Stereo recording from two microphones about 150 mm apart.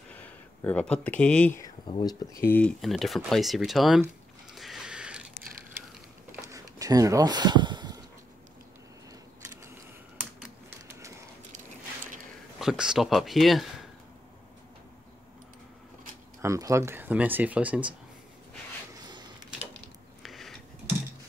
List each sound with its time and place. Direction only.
0.7 s speech: 10° left (ahead or behind)
1.6 s speech: 30° left (ahead or behind)
2.4 s speech: 10° left (ahead or behind)
2.8 s speech: centre (ahead or behind)
4.6 s a sound: centre (ahead or behind)
6.5 s a sound: 20° right (ahead or behind)
12.5 s speech: 5° right (ahead or behind)
16.3 s speech: 20° right (ahead or behind)
20.2 s a sound: centre (ahead or behind)